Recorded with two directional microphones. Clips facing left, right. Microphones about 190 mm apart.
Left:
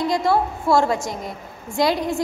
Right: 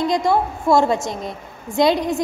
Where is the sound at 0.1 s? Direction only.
15° right (ahead or behind).